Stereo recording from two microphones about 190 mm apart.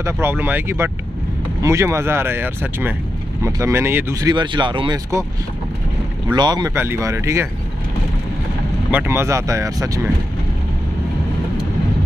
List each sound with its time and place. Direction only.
0.0 s speech: 10° right (ahead or behind)
6.3 s speech: 20° right (ahead or behind)
8.9 s speech: 10° right (ahead or behind)